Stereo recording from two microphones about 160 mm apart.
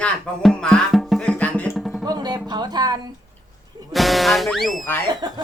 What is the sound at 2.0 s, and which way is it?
Speech, 25° right (ahead or behind).